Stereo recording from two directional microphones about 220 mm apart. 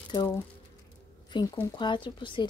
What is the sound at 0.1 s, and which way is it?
Speech, 20° left (ahead or behind).